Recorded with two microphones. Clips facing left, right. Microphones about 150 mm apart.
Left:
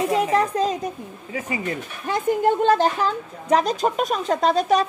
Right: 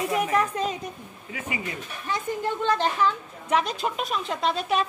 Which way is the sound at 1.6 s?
50° left (ahead or behind).